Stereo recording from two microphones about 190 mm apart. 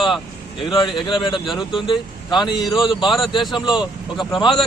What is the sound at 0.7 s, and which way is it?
Speech, 25° left (ahead or behind).